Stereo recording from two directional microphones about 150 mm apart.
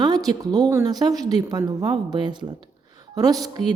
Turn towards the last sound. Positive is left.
turn(degrees=-25)  # may be behind; listen again after turning